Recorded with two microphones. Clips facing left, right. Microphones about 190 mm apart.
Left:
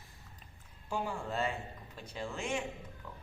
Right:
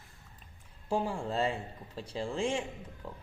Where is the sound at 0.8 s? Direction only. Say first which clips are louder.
Right 5 dB; 30° right (ahead or behind).